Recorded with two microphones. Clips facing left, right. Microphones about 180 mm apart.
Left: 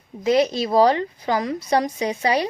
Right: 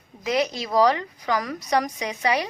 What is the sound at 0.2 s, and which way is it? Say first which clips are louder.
A woman's voice: left 6 dB; 30° left (ahead or behind).